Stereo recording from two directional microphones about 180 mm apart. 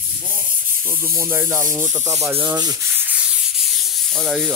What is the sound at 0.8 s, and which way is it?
Sanding, 10° right (ahead or behind).